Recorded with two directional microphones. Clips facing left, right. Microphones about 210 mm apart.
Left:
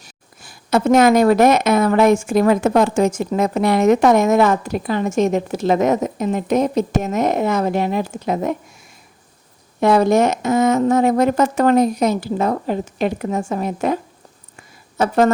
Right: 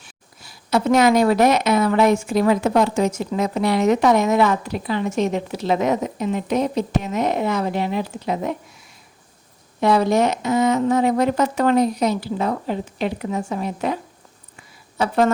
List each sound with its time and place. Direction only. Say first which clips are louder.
0.0 s a woman's voice: left 2 dB; 50° left (ahead or behind)
9.8 s a woman's voice: left 3 dB; 50° left (ahead or behind)
14.5 s a sound: left 5 dB; 45° left (ahead or behind)